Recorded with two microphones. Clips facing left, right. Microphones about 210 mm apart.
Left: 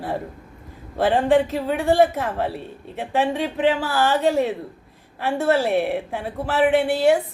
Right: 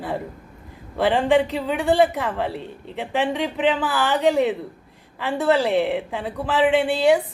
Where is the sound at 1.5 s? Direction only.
15° right (ahead or behind).